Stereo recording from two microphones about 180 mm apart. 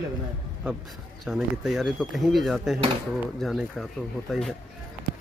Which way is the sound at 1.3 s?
Centre (ahead or behind).